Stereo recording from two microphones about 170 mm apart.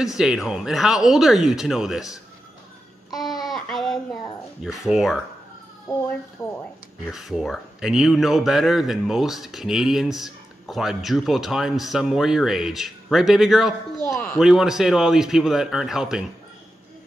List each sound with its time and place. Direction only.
0.0 s a man's voice: 5° right (ahead or behind)
3.1 s a sound: centre (ahead or behind)
4.6 s a man's voice: 5° right (ahead or behind)
6.4 s speech: 15° left (ahead or behind)
7.1 s a man's voice: 5° right (ahead or behind)